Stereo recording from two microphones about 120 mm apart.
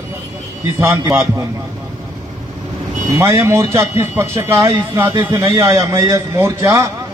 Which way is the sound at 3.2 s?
25° right (ahead or behind).